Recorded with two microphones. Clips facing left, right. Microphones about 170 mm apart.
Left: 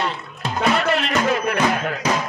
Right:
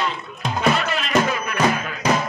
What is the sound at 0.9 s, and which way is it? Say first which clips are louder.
Music: left 1 dB; 60° left (ahead or behind).